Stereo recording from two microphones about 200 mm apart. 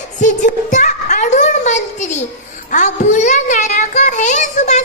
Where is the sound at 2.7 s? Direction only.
35° left (ahead or behind).